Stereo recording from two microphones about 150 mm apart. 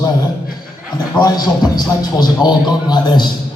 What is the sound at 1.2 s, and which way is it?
A man's voice, 25° left (ahead or behind).